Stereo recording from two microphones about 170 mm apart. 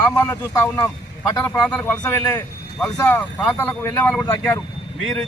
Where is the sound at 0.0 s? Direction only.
15° left (ahead or behind).